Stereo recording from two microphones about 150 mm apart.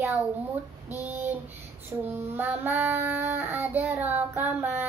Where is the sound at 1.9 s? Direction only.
20° right (ahead or behind).